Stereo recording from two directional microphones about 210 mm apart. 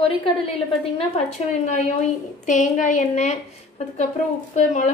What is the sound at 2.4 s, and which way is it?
Speech, 35° left (ahead or behind).